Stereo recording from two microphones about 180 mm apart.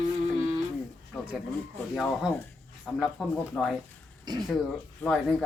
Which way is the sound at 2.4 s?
5° left (ahead or behind).